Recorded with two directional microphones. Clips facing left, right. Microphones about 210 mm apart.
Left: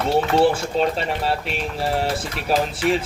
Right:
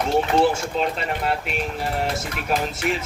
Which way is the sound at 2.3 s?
35° left (ahead or behind).